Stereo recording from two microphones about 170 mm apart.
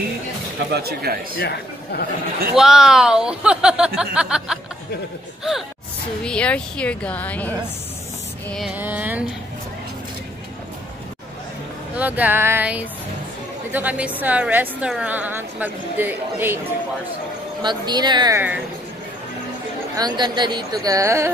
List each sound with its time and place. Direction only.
0.7 s speech: 70° right (ahead or behind)
1.4 s speech: 70° left (ahead or behind)
2.5 s speech: 5° right (ahead or behind)
6.2 s a woman's voice: 5° left (ahead or behind)
8.7 s a woman's voice: 10° right (ahead or behind)
11.9 s a woman's voice: 10° right (ahead or behind)
17.6 s speech: 25° right (ahead or behind)
20.0 s speech: 25° right (ahead or behind)